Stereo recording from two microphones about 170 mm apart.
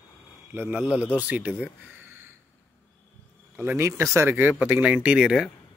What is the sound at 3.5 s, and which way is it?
Speech, 10° right (ahead or behind).